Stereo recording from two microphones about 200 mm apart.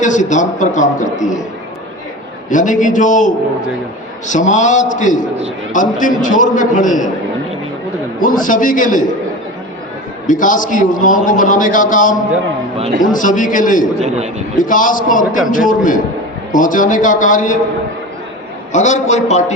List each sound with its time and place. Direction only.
0.0 s a man's voice: 40° left (ahead or behind)
2.5 s a man's voice: 40° left (ahead or behind)
8.2 s a man's voice: 40° left (ahead or behind)
10.2 s a man's voice: 40° left (ahead or behind)
18.7 s a man's voice: 35° left (ahead or behind)